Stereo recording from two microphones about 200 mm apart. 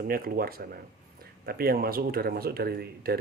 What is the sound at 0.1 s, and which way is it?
Speech, 45° right (ahead or behind).